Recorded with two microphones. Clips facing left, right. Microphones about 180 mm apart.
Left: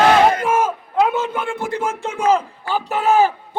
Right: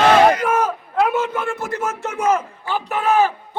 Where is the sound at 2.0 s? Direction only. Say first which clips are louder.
Left 2 dB; 30° left (ahead or behind).